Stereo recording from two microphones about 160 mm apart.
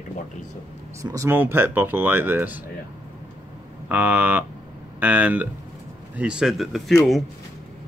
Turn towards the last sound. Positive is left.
turn(degrees=0)  # may be behind; listen again after turning